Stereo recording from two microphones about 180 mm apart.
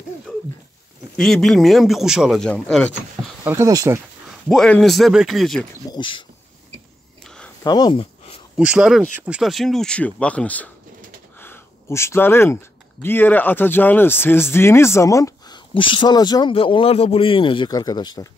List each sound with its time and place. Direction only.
0.3 s a sound: centre (ahead or behind)
1.1 s speech: centre (ahead or behind)
3.4 s speech: 15° right (ahead or behind)
4.3 s speech: centre (ahead or behind)
5.9 s speech: 25° left (ahead or behind)
7.2 s a sound: 5° left (ahead or behind)
7.6 s speech: 20° left (ahead or behind)
8.5 s speech: 5° right (ahead or behind)
11.3 s a sound: 10° left (ahead or behind)
13.0 s speech: 10° left (ahead or behind)